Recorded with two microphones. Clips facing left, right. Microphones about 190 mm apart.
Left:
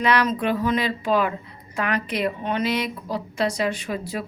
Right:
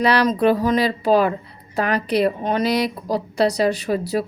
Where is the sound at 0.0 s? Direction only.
35° right (ahead or behind).